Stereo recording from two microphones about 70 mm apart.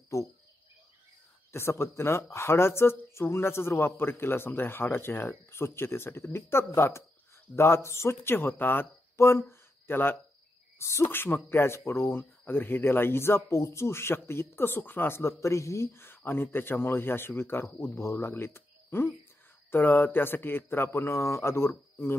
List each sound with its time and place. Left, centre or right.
0.1 s speech: left
1.5 s speech: left
9.5 s a sound: left
10.8 s speech: left